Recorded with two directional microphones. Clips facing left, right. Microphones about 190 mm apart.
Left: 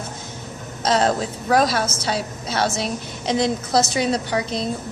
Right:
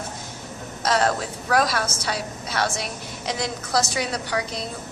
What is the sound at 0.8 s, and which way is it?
A woman's voice, 25° left (ahead or behind).